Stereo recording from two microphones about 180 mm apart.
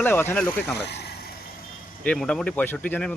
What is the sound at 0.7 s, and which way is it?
Speech, 65° left (ahead or behind).